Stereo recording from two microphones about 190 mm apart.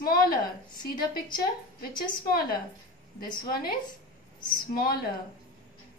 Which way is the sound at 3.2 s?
50° left (ahead or behind).